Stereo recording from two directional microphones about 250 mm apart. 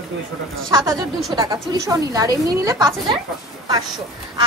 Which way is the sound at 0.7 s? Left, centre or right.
Centre.